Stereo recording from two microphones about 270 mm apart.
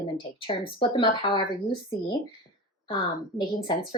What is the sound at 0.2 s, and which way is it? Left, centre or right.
Speech, centre.